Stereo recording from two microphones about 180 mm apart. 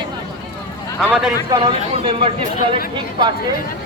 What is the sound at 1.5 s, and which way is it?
Speech, 30° right (ahead or behind).